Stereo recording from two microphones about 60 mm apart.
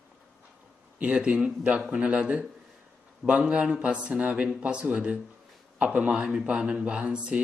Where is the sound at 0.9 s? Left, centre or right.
Right.